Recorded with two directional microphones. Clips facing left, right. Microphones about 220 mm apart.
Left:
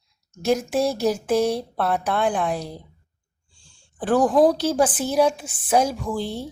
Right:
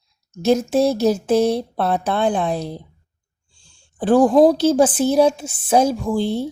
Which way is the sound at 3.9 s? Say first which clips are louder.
Right 5 dB; 25° right (ahead or behind).